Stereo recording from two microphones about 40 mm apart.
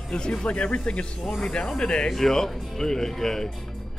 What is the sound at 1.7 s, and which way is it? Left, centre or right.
Speech, centre.